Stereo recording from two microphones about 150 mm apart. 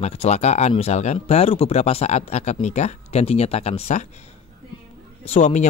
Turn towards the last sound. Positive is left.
turn(degrees=50)  # may be behind; listen again after turning